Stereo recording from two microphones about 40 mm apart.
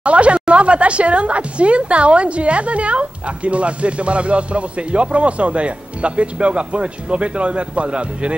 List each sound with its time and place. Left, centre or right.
0.0 s speech: right